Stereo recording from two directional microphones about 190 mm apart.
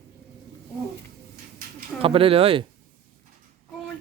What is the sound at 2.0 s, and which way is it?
Speech, 30° right (ahead or behind).